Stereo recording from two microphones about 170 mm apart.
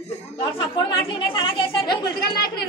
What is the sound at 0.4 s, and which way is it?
Chatter, 25° left (ahead or behind).